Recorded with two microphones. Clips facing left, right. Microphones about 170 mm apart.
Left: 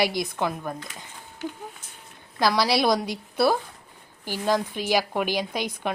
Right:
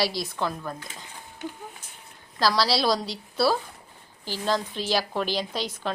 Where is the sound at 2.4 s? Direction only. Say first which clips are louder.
Left 2 dB; 15° left (ahead or behind).